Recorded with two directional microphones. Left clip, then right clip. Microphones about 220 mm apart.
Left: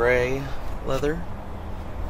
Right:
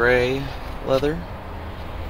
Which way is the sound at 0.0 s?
25° right (ahead or behind).